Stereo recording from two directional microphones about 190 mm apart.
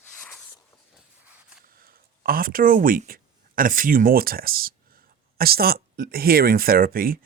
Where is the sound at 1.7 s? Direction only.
50° right (ahead or behind).